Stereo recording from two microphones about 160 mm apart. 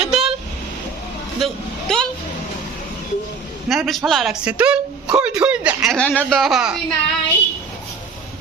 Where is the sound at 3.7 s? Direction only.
Centre (ahead or behind).